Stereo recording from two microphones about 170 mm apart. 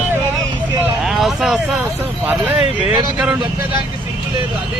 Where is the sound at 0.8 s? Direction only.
5° right (ahead or behind).